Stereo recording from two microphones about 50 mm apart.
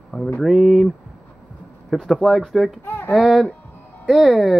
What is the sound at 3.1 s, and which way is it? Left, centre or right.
Speech, centre.